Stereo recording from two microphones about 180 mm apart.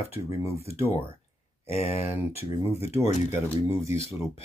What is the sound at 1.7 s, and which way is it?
Speech, 35° left (ahead or behind).